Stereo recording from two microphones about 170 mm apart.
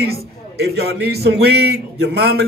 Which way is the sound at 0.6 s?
70° right (ahead or behind).